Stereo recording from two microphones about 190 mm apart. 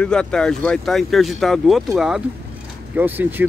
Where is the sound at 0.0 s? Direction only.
5° left (ahead or behind).